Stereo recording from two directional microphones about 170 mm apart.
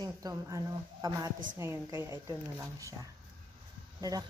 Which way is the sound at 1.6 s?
15° right (ahead or behind).